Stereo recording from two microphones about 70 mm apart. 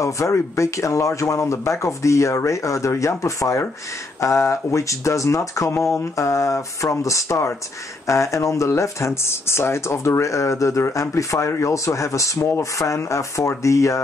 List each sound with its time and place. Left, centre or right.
0.0 s speech: left